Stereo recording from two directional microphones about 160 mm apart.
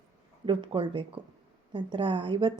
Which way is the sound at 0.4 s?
30° right (ahead or behind).